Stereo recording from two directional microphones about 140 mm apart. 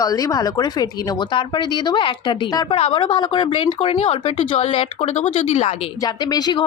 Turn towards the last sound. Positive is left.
turn(degrees=30)  # may be behind; listen again after turning